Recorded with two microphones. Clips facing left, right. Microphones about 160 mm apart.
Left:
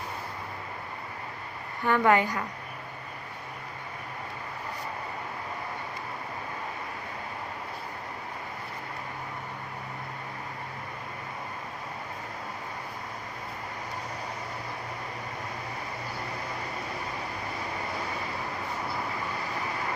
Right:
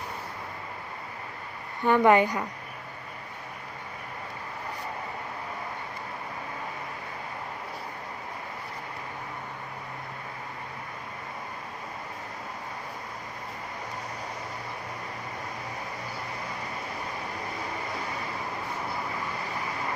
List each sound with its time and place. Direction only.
1.8 s a woman's voice: 20° right (ahead or behind)